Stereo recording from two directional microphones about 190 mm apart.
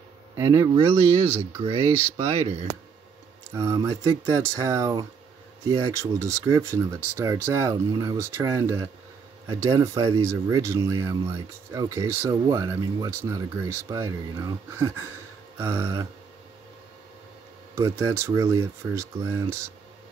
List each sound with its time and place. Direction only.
0.4 s speech: 15° right (ahead or behind)
0.7 s speech: 30° right (ahead or behind)
3.5 s speech: 15° right (ahead or behind)
17.7 s speech: 15° right (ahead or behind)